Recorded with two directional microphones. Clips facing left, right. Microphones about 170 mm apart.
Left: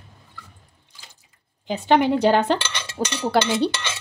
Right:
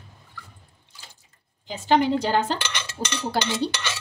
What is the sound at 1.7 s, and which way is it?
A woman's voice, 60° left (ahead or behind).